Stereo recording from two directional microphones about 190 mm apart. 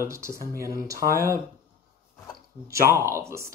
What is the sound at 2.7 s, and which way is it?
Speech, 15° right (ahead or behind).